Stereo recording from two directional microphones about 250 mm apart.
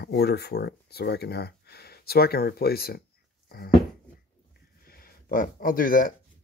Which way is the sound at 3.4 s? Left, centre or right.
Left.